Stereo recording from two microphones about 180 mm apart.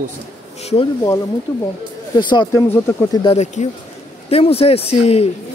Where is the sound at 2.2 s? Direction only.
25° left (ahead or behind).